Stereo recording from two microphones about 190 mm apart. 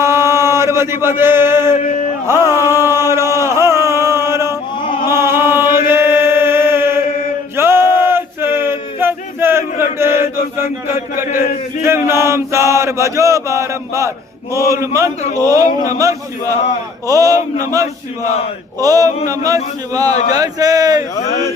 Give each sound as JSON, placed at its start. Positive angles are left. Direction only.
{"t": 0.0, "sound": "chant", "side_deg": -15}
{"t": 1.2, "sound": "mantra", "side_deg": -10}
{"t": 2.2, "sound": "a sound", "side_deg": -15}
{"t": 5.0, "sound": "chant", "side_deg": -15}
{"t": 7.5, "sound": "a sound", "side_deg": -15}
{"t": 11.8, "sound": "mantra", "side_deg": -15}
{"t": 20.3, "sound": "speech", "side_deg": -20}